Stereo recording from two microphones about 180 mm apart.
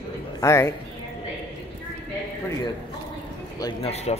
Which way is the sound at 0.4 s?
15° left (ahead or behind).